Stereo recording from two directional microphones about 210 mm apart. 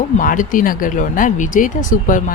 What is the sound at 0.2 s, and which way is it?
Speech, 40° left (ahead or behind).